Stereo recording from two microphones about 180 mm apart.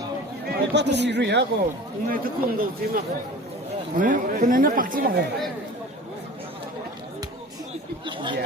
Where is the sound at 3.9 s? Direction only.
45° right (ahead or behind).